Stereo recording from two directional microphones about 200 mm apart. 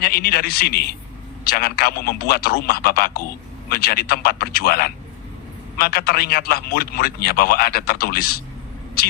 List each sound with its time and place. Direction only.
0.0 s a man's voice: 50° left (ahead or behind)